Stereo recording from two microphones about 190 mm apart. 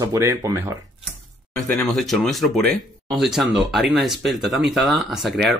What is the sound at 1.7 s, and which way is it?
Speech, centre (ahead or behind).